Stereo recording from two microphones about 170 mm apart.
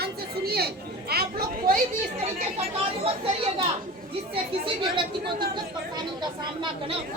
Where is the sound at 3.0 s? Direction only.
35° right (ahead or behind).